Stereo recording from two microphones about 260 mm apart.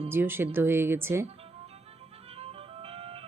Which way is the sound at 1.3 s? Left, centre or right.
Right.